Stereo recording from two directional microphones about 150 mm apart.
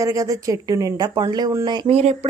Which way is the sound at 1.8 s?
45° right (ahead or behind).